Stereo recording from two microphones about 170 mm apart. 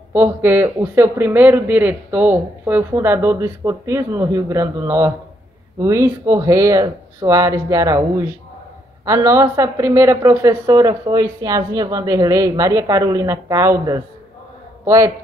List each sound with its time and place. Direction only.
0.1 s speech: 15° right (ahead or behind)
9.0 s speech: 15° right (ahead or behind)